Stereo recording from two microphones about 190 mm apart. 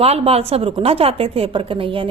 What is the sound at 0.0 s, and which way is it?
A woman's voice, 30° right (ahead or behind).